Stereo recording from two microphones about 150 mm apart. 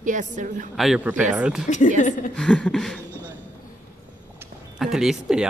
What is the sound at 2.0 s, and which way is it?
Speech, 60° left (ahead or behind).